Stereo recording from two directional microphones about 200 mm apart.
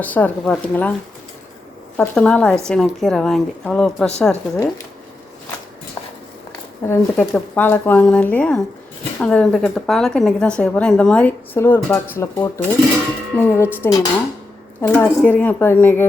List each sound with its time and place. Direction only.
0.0 s speech: 10° left (ahead or behind)
2.0 s a woman's voice: 5° left (ahead or behind)
6.0 s a sound: 20° left (ahead or behind)
6.8 s a woman's voice: 10° left (ahead or behind)